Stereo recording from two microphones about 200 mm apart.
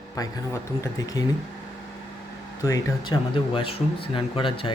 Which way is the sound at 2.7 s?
20° left (ahead or behind).